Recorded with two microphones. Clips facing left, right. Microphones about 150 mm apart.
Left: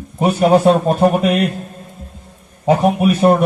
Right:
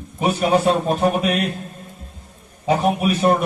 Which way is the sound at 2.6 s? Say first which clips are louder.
Left 5 dB; 45° left (ahead or behind).